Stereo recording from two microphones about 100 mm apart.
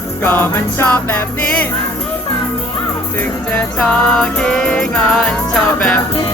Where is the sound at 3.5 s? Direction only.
10° left (ahead or behind).